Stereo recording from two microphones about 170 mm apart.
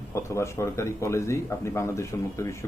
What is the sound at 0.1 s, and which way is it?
Speech, 15° left (ahead or behind).